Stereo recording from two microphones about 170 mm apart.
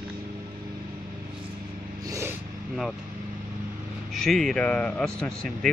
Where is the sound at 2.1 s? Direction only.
15° right (ahead or behind).